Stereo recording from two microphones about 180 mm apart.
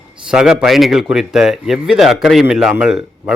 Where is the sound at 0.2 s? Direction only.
5° right (ahead or behind).